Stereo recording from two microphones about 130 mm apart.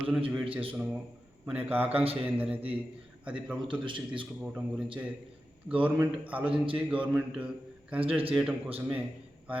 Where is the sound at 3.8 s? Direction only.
40° right (ahead or behind).